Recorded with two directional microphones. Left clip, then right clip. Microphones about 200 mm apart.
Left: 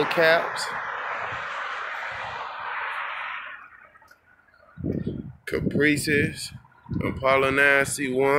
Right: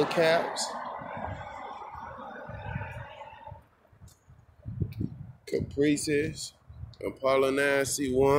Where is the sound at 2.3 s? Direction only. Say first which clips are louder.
Left 10 dB; 40° right (ahead or behind).